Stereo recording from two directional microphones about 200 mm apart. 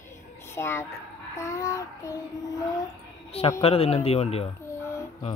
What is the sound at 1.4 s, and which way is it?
Child singing, 15° left (ahead or behind).